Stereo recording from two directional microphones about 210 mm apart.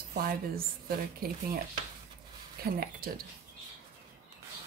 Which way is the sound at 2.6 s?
45° right (ahead or behind).